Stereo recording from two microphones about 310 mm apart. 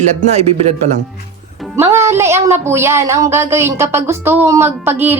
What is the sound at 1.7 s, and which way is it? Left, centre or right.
Speech, centre.